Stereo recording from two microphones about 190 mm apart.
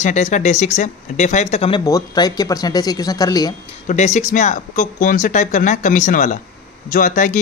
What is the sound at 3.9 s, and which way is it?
Speech, 40° left (ahead or behind).